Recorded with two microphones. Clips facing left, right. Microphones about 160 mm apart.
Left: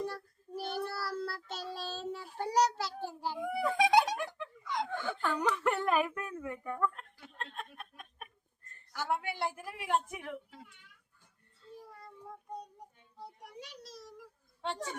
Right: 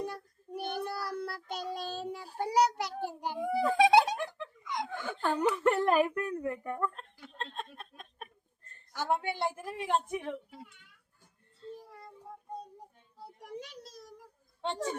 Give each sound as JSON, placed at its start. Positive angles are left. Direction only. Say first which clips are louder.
{"t": 0.0, "sound": "child singing", "louder": "even", "side_deg": -15}
{"t": 2.4, "sound": "a sound", "louder": "right 2 dB", "side_deg": -10}
{"t": 3.3, "sound": "giggle", "louder": "right 5 dB", "side_deg": -30}
{"t": 4.6, "sound": "chuckle", "louder": "left 1 dB", "side_deg": -15}
{"t": 5.2, "sound": "a sound", "louder": "right 5 dB", "side_deg": -35}
{"t": 7.3, "sound": "chuckle", "louder": "right 3 dB", "side_deg": -25}
{"t": 8.9, "sound": "a woman's voice", "louder": "right 3 dB", "side_deg": -25}
{"t": 13.4, "sound": "a sound", "louder": "right 5 dB", "side_deg": -50}
{"t": 14.6, "sound": "speech", "louder": "right 4 dB", "side_deg": -25}